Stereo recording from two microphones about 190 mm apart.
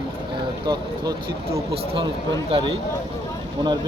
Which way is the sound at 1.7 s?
25° right (ahead or behind).